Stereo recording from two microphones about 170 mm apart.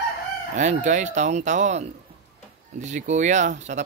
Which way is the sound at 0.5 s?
45° right (ahead or behind).